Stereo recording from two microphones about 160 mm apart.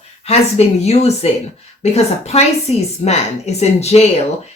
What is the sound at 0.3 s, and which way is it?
A woman's voice, 40° left (ahead or behind).